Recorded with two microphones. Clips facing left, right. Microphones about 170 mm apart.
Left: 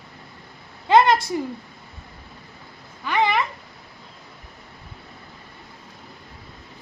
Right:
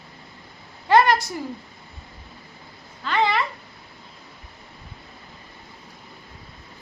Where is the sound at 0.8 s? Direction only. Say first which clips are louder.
Left 1 dB; 20° left (ahead or behind).